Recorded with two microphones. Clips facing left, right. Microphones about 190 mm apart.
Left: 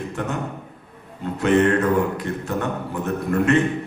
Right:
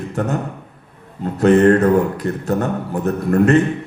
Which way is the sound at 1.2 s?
40° right (ahead or behind).